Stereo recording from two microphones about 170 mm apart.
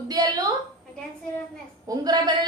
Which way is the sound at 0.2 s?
25° right (ahead or behind).